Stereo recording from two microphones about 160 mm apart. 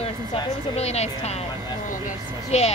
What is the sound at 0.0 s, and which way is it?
Speech, 40° left (ahead or behind).